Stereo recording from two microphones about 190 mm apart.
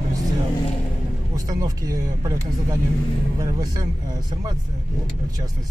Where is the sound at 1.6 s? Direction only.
20° right (ahead or behind).